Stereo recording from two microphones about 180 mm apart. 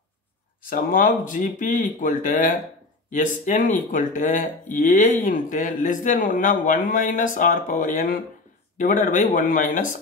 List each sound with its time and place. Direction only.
0.7 s a man's voice: 50° left (ahead or behind)